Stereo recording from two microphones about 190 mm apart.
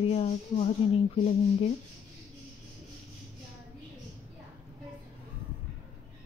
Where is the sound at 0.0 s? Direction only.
35° left (ahead or behind).